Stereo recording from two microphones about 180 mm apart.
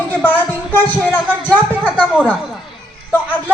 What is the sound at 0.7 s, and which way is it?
Speech, 10° left (ahead or behind).